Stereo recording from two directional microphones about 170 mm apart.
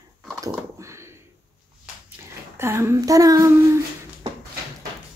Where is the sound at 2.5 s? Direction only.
15° right (ahead or behind).